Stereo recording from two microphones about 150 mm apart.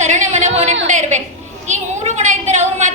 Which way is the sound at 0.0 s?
50° right (ahead or behind).